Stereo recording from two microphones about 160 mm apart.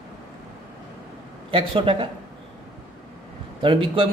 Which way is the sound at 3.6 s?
30° right (ahead or behind).